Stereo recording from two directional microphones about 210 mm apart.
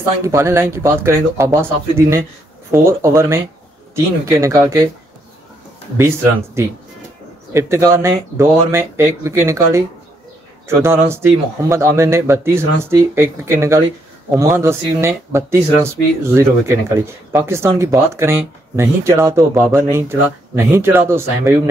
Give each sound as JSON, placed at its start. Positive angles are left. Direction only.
{"t": 0.2, "sound": "speech", "side_deg": -10}
{"t": 5.9, "sound": "speech", "side_deg": -10}